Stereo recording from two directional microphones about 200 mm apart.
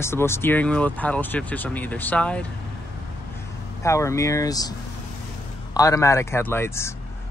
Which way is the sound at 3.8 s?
15° left (ahead or behind).